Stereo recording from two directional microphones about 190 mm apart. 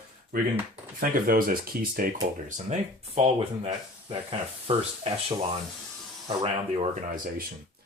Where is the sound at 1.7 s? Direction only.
50° right (ahead or behind).